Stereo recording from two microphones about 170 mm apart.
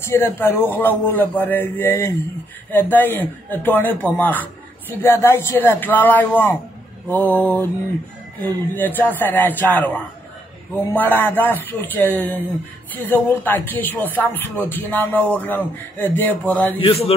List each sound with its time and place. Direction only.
0.0 s a man's voice: 15° left (ahead or behind)
8.7 s a man's voice: 10° left (ahead or behind)
11.0 s a man's voice: 10° left (ahead or behind)
16.8 s mantra: 35° left (ahead or behind)